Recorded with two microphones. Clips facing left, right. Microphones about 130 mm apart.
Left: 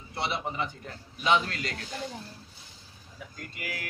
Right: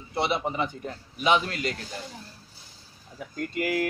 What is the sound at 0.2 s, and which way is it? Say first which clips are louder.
A man's voice: right 5 dB; 15° right (ahead or behind).